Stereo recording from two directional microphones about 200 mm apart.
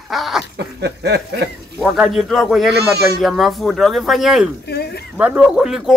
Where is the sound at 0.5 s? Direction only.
55° right (ahead or behind).